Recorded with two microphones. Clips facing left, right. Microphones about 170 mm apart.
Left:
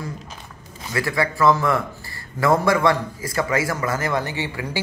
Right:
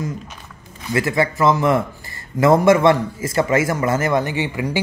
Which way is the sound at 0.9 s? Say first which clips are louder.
Right 4 dB; 20° right (ahead or behind).